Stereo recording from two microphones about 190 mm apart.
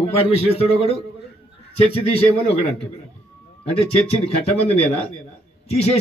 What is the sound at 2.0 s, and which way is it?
Speech, 30° left (ahead or behind).